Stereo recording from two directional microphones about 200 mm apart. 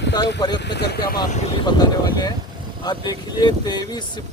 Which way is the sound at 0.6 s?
55° left (ahead or behind).